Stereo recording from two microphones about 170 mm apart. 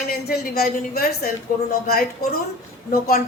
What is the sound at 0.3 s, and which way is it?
A woman's voice, 65° left (ahead or behind).